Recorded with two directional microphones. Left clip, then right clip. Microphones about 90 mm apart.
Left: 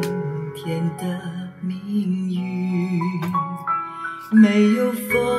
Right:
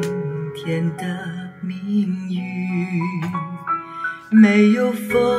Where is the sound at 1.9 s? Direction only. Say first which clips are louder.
Right 2 dB; 30° left (ahead or behind).